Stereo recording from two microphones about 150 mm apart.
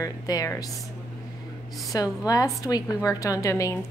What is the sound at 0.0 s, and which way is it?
Speech, 25° left (ahead or behind).